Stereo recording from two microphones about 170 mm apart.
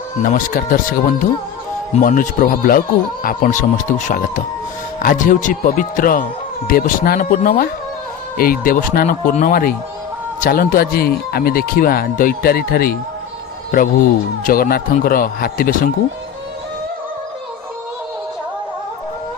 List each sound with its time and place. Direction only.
0.2 s speech: 55° left (ahead or behind)
14.4 s speech: 60° left (ahead or behind)